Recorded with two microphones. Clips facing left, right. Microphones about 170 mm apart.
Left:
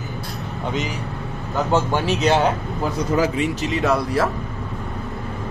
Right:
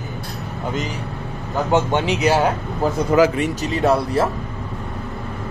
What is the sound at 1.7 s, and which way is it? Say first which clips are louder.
Speech: right 2 dB; 20° right (ahead or behind).